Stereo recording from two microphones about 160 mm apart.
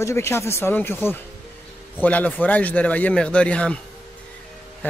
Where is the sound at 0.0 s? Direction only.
15° left (ahead or behind).